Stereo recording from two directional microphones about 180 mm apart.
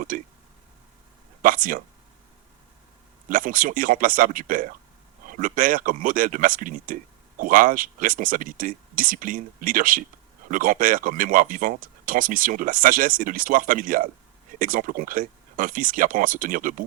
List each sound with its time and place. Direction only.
0.1 s speech: 50° right (ahead or behind)
1.4 s speech: 50° right (ahead or behind)
3.2 s speech: 50° right (ahead or behind)